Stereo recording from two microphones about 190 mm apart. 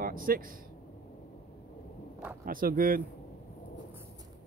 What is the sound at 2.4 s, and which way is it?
Speech, 50° right (ahead or behind).